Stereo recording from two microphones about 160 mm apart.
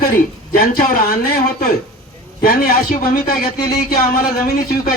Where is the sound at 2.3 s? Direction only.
65° left (ahead or behind).